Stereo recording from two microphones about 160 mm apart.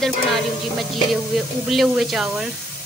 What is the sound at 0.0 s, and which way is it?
Music, centre (ahead or behind).